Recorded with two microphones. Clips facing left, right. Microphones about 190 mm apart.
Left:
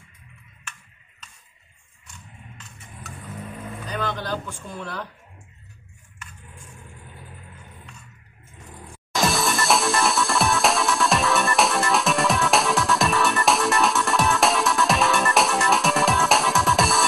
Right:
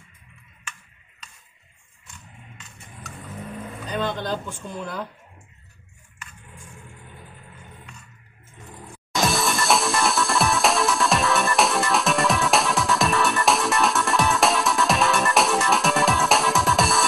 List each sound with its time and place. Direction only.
3.9 s speech: 25° right (ahead or behind)
9.1 s music: centre (ahead or behind)